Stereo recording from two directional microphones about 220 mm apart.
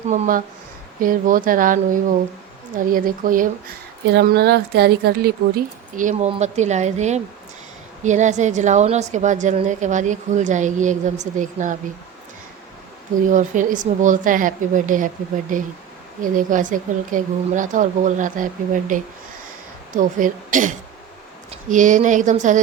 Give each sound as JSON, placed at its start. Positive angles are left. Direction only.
{"t": 0.1, "sound": "a woman's voice", "side_deg": -40}
{"t": 13.3, "sound": "a woman's voice", "side_deg": -35}